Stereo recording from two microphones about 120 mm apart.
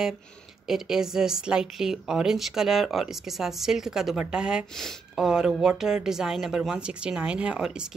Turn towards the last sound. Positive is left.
turn(degrees=-5)  # may be behind; listen again after turning